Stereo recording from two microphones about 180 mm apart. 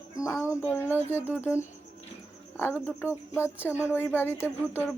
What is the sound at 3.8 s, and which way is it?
Speech, 15° left (ahead or behind).